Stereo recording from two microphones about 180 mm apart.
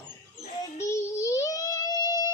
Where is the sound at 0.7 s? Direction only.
15° left (ahead or behind).